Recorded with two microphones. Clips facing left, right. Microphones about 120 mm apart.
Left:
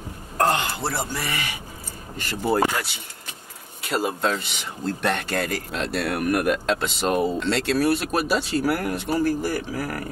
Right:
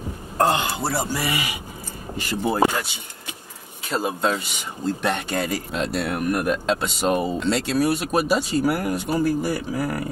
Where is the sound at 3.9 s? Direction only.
Centre (ahead or behind).